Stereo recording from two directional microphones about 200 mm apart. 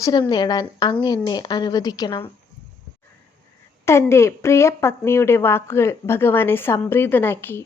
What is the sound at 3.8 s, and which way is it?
A woman's voice, 15° left (ahead or behind).